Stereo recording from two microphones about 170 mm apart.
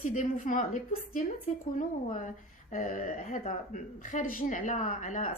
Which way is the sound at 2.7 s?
50° left (ahead or behind).